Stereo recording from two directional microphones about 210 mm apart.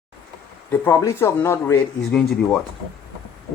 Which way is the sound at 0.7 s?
10° left (ahead or behind).